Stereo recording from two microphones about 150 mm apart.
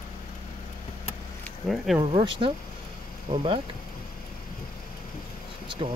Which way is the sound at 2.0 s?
35° right (ahead or behind).